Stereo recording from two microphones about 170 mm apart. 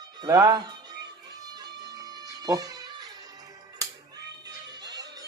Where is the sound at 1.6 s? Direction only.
25° right (ahead or behind).